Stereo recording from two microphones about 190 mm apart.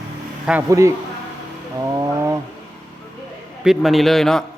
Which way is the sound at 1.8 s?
15° right (ahead or behind).